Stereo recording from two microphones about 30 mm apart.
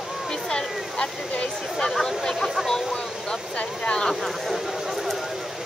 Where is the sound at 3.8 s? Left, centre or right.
Left.